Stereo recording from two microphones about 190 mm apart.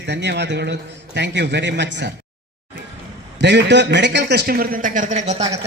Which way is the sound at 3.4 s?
65° right (ahead or behind).